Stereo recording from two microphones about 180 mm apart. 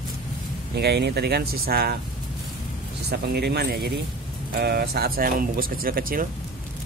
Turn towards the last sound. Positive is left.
turn(degrees=-55)  # may be behind; listen again after turning